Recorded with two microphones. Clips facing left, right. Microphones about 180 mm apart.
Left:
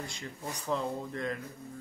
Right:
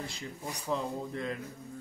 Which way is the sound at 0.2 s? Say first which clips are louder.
Even; 5° right (ahead or behind).